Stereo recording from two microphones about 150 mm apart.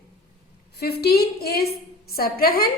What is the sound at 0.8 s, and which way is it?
A woman's voice, 90° left.